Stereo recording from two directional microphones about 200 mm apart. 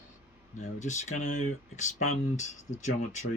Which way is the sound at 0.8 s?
35° left (ahead or behind).